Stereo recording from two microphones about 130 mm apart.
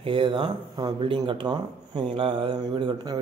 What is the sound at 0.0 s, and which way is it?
Speech, 40° right (ahead or behind).